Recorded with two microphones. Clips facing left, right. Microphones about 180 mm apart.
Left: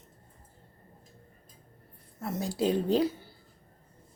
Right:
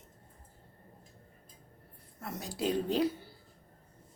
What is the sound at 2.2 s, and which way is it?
Speech, 30° left (ahead or behind).